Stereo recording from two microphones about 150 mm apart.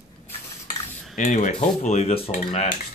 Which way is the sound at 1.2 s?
55° left (ahead or behind).